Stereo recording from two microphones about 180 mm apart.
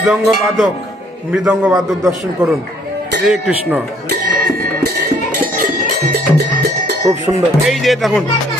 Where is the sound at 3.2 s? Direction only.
5° right (ahead or behind).